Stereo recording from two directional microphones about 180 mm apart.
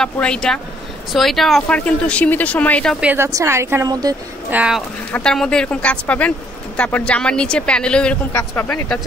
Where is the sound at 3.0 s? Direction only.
15° right (ahead or behind).